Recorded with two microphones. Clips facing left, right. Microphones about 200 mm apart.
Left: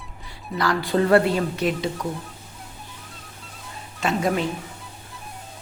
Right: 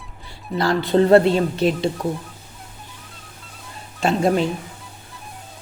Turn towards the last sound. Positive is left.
turn(degrees=-30)  # may be behind; listen again after turning